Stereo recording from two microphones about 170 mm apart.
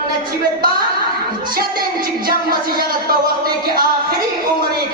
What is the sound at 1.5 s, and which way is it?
Speech, 60° right (ahead or behind).